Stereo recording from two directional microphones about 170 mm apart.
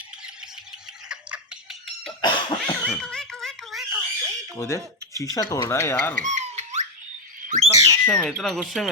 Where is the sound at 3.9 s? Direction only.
20° right (ahead or behind).